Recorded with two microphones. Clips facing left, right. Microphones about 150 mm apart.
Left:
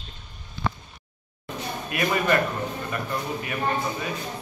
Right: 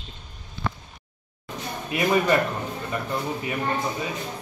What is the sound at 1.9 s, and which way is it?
Speech, 25° right (ahead or behind).